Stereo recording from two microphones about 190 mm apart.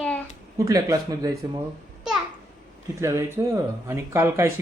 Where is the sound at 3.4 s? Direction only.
20° right (ahead or behind).